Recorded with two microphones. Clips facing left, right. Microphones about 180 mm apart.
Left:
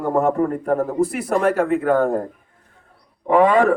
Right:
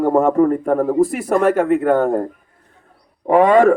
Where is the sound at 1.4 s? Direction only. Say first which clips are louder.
Right 3 dB; centre (ahead or behind).